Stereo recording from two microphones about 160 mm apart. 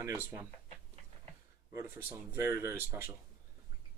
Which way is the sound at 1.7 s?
15° right (ahead or behind).